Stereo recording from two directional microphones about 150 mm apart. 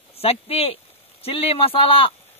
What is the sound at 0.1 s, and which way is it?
A man's voice, 40° left (ahead or behind).